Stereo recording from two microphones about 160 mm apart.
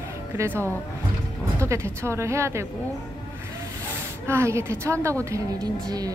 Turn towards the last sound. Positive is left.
turn(degrees=-25)  # may be behind; listen again after turning